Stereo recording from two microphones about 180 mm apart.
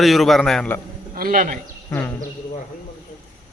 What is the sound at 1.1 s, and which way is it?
Speech, 50° right (ahead or behind).